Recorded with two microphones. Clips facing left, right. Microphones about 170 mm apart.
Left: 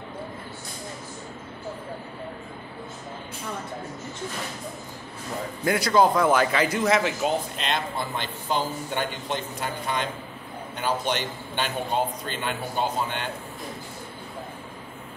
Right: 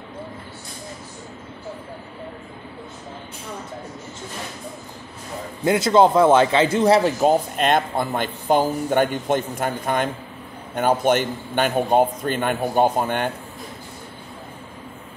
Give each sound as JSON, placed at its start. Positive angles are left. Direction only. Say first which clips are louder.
{"t": 5.6, "sound": "a man's voice", "louder": "right 5 dB", "side_deg": -25}